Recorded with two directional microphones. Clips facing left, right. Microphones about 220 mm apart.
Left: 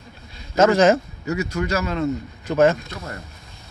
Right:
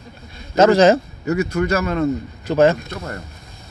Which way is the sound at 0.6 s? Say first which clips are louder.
Right 3 dB; 35° right (ahead or behind).